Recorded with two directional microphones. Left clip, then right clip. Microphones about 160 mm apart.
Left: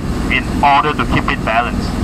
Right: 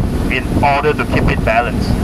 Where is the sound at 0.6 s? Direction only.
50° right (ahead or behind).